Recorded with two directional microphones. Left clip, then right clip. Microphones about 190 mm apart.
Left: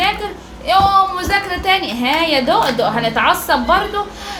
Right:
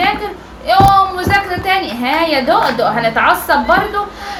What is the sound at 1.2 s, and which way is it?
A woman's voice, 25° left (ahead or behind).